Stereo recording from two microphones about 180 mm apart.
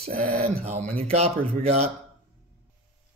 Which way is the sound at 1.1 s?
35° right (ahead or behind).